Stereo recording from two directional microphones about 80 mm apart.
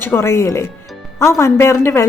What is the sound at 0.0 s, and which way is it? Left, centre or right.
Speech, left.